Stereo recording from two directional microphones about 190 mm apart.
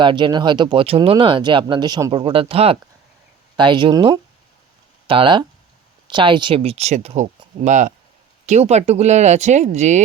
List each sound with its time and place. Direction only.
0.0 s speech: 25° right (ahead or behind)